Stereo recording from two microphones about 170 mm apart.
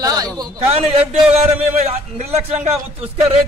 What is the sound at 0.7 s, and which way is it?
A man's voice, 40° right (ahead or behind).